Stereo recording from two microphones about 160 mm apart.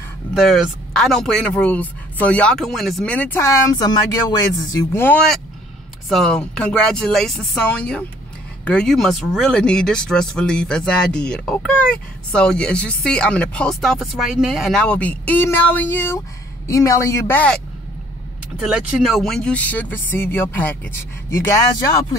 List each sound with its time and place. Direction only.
0.3 s speech: centre (ahead or behind)
3.7 s speech: 25° left (ahead or behind)
4.9 s speech: 10° left (ahead or behind)
18.6 s speech: 5° right (ahead or behind); by 21.5 s 15° left (ahead or behind)